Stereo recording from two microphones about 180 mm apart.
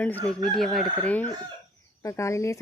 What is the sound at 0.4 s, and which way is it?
Chicken, centre (ahead or behind).